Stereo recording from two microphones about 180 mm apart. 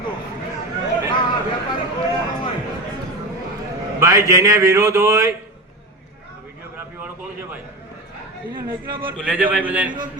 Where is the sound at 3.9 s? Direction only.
15° right (ahead or behind).